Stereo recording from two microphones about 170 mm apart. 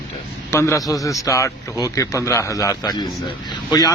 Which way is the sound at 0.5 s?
15° left (ahead or behind).